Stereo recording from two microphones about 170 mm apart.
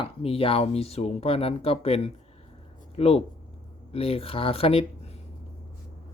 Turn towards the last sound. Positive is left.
turn(degrees=35)  # may be behind; listen again after turning